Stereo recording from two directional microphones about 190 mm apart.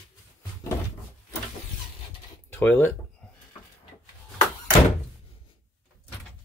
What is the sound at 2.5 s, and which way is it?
Speech, 10° left (ahead or behind).